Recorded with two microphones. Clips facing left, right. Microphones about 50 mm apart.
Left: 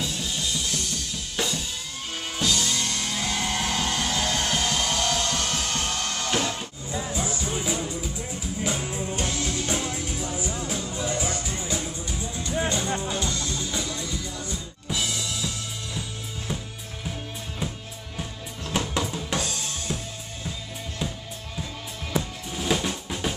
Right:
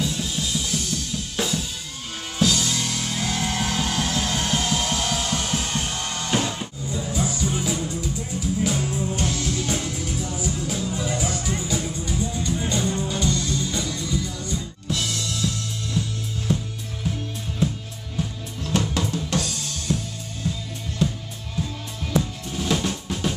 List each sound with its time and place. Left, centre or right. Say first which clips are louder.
0.0 s drum kit: right 3 dB; centre
2.3 s music: right 4 dB; centre
7.1 s music: right 5 dB; centre
11.7 s music: right 4 dB; centre
18.1 s drum: right 6 dB; centre
19.9 s drum kit: right 7 dB; centre
21.0 s music: right 8 dB; centre
22.5 s drum: right 1 dB; centre